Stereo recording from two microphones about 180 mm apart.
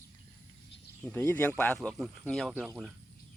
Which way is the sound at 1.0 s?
10° left (ahead or behind).